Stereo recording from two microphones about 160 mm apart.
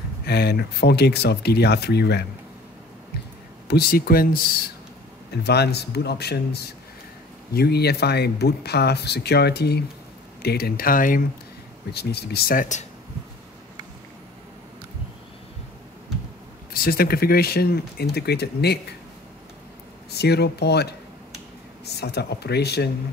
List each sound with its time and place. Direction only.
0.2 s speech: 80° left
3.6 s speech: 80° left; by 4.6 s 65° left (ahead or behind)
5.3 s speech: 90° left; by 11.2 s 60° left (ahead or behind)
11.9 s speech: 90° left; by 12.8 s 55° left (ahead or behind)
16.7 s speech: 70° left (ahead or behind); by 18.8 s 90° left
20.1 s speech: 90° left